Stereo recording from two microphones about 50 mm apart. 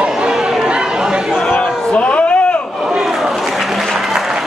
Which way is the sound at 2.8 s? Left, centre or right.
Centre.